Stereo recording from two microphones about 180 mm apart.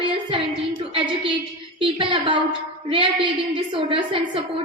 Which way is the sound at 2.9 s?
30° right (ahead or behind).